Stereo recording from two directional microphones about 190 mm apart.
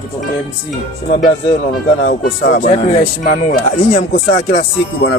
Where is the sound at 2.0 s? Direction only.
50° left (ahead or behind).